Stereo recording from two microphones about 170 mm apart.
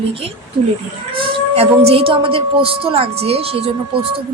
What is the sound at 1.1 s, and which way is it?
A woman's voice, 35° right (ahead or behind).